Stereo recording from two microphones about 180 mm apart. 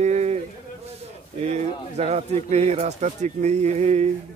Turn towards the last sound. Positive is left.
turn(degrees=-40)  # may be behind; listen again after turning